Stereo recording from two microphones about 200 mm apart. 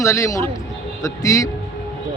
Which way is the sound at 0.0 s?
15° left (ahead or behind).